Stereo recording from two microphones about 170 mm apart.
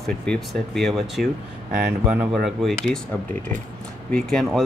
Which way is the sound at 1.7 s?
60° right (ahead or behind).